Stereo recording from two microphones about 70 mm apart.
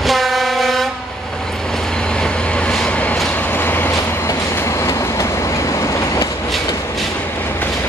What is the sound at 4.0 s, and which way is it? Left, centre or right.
Train, left.